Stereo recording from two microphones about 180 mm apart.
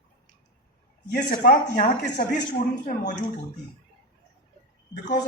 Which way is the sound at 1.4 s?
50° left (ahead or behind).